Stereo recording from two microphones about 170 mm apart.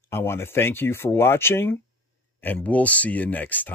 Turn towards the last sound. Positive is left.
turn(degrees=10)  # may be behind; listen again after turning